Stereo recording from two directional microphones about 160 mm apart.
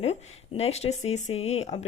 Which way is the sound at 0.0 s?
40° left (ahead or behind).